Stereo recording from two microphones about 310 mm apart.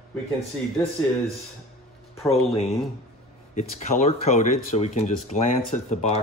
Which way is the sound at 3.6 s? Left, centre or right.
Left.